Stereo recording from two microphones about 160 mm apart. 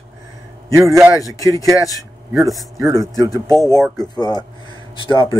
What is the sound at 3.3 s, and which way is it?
Speech, 25° left (ahead or behind).